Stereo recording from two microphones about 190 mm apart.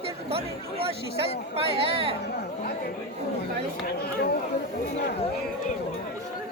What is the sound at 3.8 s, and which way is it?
Speech, 55° left (ahead or behind).